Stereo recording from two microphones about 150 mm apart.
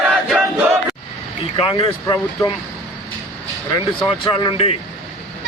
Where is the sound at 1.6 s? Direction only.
35° left (ahead or behind).